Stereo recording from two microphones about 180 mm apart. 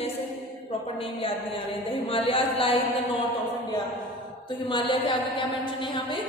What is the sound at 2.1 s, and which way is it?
Speech, 30° left (ahead or behind).